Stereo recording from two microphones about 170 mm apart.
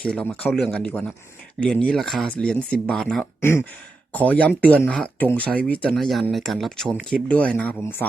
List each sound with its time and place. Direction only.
0.0 s speech: 5° left (ahead or behind)